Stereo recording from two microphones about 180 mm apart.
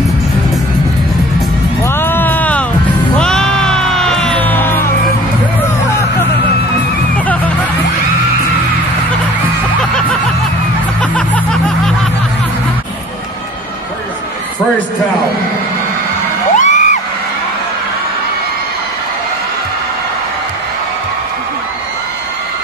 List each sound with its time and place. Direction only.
1.8 s music: 10° left (ahead or behind)
11.0 s music: 5° left (ahead or behind)
16.5 s music: 40° left (ahead or behind)